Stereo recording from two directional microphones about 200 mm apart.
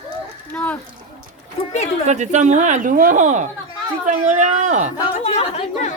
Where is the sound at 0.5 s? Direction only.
5° left (ahead or behind).